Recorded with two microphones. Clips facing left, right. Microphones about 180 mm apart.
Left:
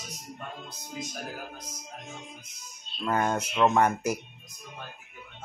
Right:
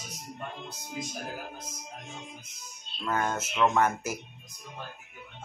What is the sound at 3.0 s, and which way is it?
Speech, 15° left (ahead or behind).